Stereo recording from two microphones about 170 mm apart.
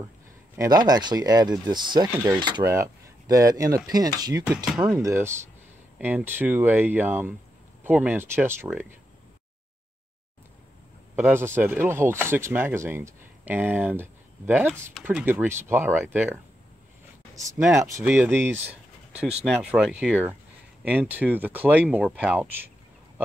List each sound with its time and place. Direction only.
0.6 s speech: 25° right (ahead or behind)
11.1 s speech: 10° right (ahead or behind)
17.4 s speech: centre (ahead or behind)
17.7 s speech: 20° right (ahead or behind)